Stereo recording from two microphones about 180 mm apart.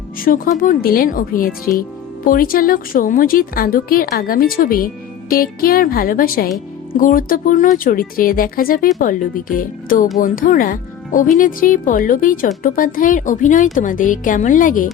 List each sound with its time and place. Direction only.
0.3 s a woman's voice: 50° left (ahead or behind)